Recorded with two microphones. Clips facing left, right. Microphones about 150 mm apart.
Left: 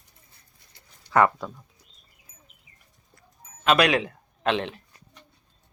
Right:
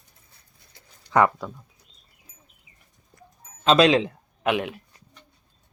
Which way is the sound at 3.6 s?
25° right (ahead or behind).